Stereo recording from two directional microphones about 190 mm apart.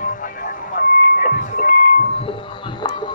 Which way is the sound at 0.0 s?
45° left (ahead or behind).